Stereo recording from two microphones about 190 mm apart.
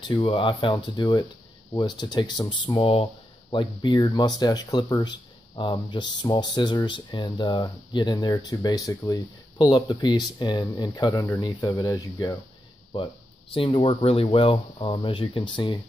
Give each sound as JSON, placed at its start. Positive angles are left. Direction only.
{"t": 0.1, "sound": "speech", "side_deg": 25}